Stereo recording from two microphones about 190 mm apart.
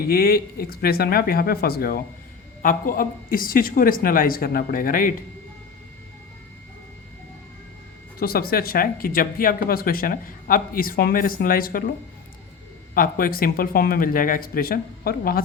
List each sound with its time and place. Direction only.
0.0 s speech: 55° left (ahead or behind)
8.2 s speech: 50° left (ahead or behind)
12.9 s speech: 50° left (ahead or behind)